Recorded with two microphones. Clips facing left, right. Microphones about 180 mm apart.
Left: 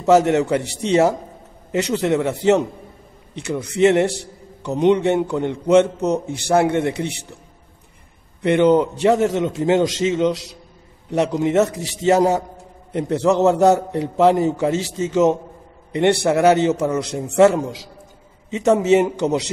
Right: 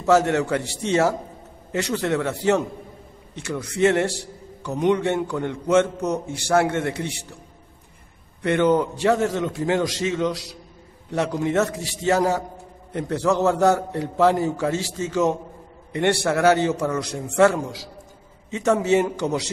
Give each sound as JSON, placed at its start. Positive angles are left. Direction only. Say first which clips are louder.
{"t": 0.0, "sound": "a man's voice", "louder": "left 4 dB", "side_deg": 20}
{"t": 8.4, "sound": "a man's voice", "louder": "left 4 dB", "side_deg": 20}